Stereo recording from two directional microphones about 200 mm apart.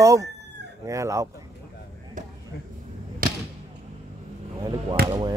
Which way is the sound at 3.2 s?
45° right (ahead or behind).